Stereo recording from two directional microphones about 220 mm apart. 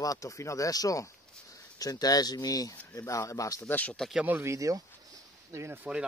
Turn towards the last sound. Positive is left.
turn(degrees=-10)  # may be behind; listen again after turning